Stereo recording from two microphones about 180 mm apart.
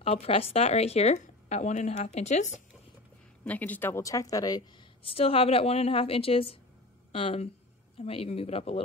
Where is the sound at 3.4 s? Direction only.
10° left (ahead or behind).